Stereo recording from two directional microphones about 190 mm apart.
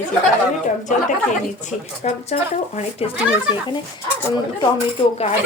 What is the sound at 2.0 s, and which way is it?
Speech, 35° left (ahead or behind).